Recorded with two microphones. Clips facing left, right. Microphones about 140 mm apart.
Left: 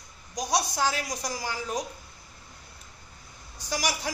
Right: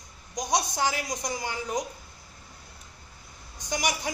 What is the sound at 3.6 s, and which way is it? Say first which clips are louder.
Speech: right 1 dB; 20° right (ahead or behind).